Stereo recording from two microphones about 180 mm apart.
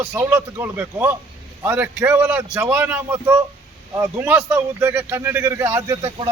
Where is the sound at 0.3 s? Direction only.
15° right (ahead or behind).